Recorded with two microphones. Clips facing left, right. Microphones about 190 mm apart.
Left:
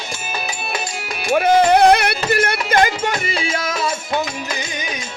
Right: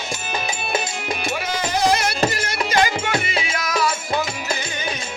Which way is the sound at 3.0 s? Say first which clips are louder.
Left 2 dB; 30° left (ahead or behind).